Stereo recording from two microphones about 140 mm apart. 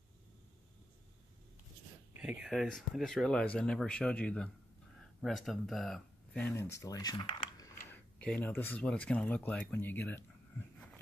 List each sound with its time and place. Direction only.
2.1 s speech: 10° right (ahead or behind)
6.4 s speech: 20° left (ahead or behind)
7.9 s speech: 10° left (ahead or behind)